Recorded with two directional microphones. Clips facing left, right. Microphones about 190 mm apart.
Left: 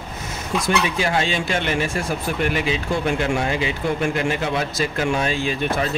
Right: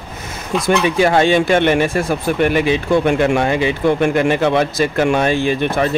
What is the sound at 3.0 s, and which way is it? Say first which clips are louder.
Speech: right 7 dB; 55° right (ahead or behind).